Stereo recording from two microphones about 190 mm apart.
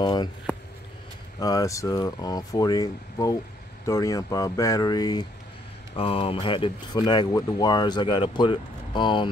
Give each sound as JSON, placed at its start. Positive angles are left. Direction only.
{"t": 0.0, "sound": "speech", "side_deg": 25}
{"t": 1.4, "sound": "speech", "side_deg": 20}